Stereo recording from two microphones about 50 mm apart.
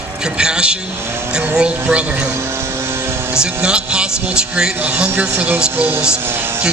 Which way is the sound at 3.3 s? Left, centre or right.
Centre.